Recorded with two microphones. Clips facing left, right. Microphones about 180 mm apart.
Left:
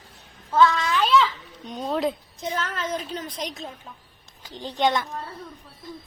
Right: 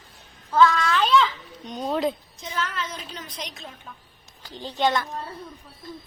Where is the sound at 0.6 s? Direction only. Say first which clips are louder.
Right 1 dB; 20° left (ahead or behind).